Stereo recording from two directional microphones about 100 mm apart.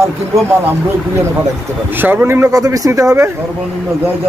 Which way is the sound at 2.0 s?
20° right (ahead or behind).